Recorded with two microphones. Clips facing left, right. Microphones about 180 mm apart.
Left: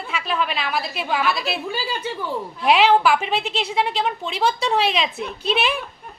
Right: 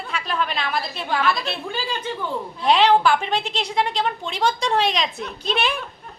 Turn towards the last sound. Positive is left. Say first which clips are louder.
# left 2 dB
turn(degrees=0)  # may be behind; listen again after turning